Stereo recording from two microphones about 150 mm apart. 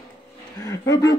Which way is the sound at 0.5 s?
25° left (ahead or behind).